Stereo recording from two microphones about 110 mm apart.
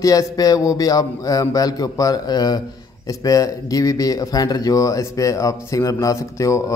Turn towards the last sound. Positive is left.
turn(degrees=30)  # may be behind; listen again after turning